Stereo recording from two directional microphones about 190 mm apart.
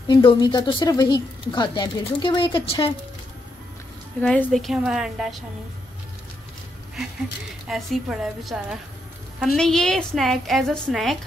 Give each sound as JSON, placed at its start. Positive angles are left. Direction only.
{"t": 0.1, "sound": "speech", "side_deg": 25}
{"t": 4.2, "sound": "a woman's voice", "side_deg": 5}
{"t": 7.6, "sound": "a woman's voice", "side_deg": 0}